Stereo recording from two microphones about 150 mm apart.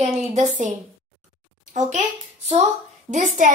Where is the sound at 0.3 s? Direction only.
55° right (ahead or behind).